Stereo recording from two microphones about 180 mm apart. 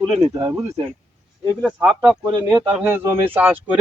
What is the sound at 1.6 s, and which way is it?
Speech, 5° right (ahead or behind).